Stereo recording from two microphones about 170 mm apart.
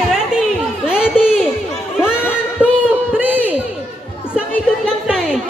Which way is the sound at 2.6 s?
10° right (ahead or behind).